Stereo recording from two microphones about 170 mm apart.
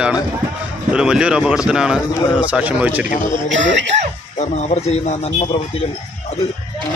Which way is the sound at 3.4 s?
90° right.